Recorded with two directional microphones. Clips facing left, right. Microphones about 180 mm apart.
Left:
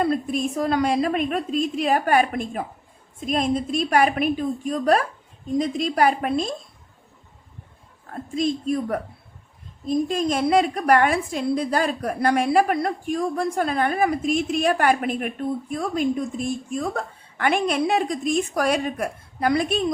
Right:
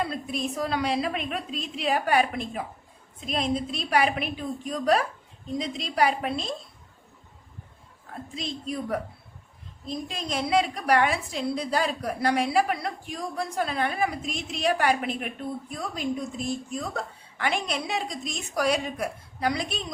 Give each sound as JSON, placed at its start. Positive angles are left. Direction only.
{"t": 0.0, "sound": "a woman's voice", "side_deg": 50}
{"t": 8.1, "sound": "a woman's voice", "side_deg": 50}